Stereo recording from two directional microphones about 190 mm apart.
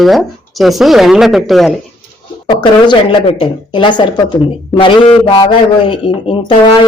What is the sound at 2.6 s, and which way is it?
Speech, 25° left (ahead or behind).